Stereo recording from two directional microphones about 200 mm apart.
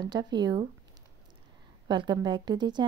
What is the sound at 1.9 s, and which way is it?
Speech, 20° right (ahead or behind).